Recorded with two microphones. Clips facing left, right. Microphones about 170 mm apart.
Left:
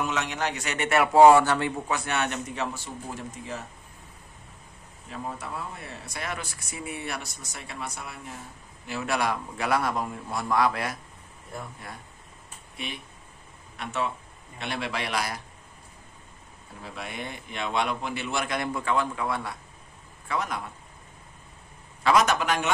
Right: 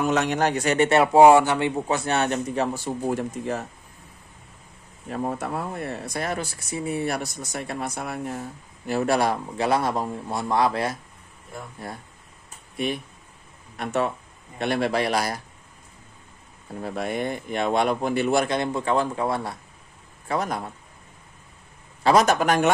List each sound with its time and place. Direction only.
0.1 s a man's voice: 45° right (ahead or behind)
0.8 s speech: 30° right (ahead or behind)
1.1 s speech: 15° right (ahead or behind)
1.9 s speech: 35° right (ahead or behind); by 3.6 s 55° right (ahead or behind)
5.1 s a man's voice: 50° right (ahead or behind)
16.8 s a man's voice: 45° right (ahead or behind)
18.5 s speech: 25° right (ahead or behind)
22.0 s a man's voice: 35° right (ahead or behind)